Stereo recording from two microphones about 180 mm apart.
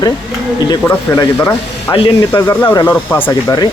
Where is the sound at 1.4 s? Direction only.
5° left (ahead or behind).